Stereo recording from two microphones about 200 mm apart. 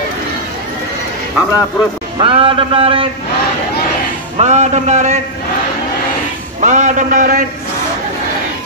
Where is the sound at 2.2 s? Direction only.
25° right (ahead or behind).